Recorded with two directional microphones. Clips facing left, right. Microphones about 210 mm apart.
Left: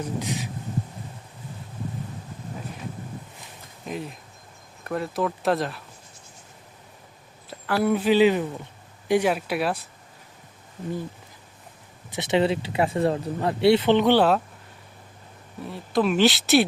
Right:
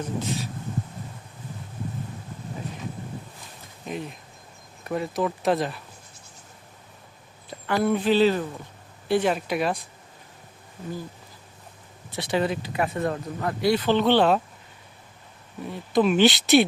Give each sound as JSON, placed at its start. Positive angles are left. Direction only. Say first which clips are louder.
{"t": 0.2, "sound": "speech", "louder": "right 1 dB", "side_deg": 15}
{"t": 3.8, "sound": "speech", "louder": "even", "side_deg": 0}
{"t": 7.7, "sound": "speech", "louder": "left 1 dB", "side_deg": 10}
{"t": 12.1, "sound": "speech", "louder": "left 3 dB", "side_deg": 20}
{"t": 15.7, "sound": "speech", "louder": "right 2 dB", "side_deg": 0}